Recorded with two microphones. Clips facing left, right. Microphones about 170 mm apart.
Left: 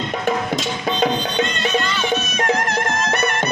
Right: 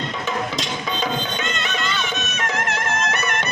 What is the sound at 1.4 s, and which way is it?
Music, 35° left (ahead or behind).